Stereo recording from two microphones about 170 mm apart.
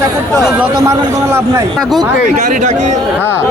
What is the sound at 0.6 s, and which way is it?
A man's voice, 15° right (ahead or behind).